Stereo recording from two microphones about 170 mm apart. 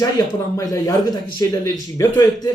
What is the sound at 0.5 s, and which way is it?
A man's voice, 20° left (ahead or behind).